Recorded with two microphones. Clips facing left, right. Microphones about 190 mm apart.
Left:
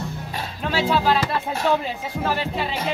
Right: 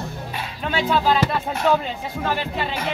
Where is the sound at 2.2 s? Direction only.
5° left (ahead or behind).